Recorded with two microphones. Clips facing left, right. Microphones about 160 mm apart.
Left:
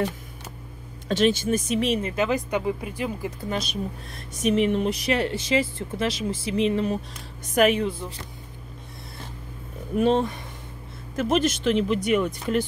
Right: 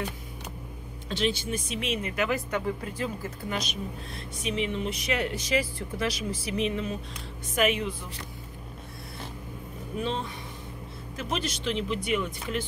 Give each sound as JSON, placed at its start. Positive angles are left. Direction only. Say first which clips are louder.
{"t": 1.0, "sound": "speech", "louder": "left 7 dB", "side_deg": 50}
{"t": 4.5, "sound": "speech", "louder": "left 9 dB", "side_deg": 50}
{"t": 4.8, "sound": "a woman's voice", "louder": "left 5 dB", "side_deg": 35}
{"t": 9.9, "sound": "speech", "louder": "left 11 dB", "side_deg": 55}